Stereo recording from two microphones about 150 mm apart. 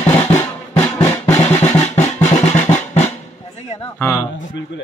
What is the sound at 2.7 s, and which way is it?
Drum, 50° left (ahead or behind).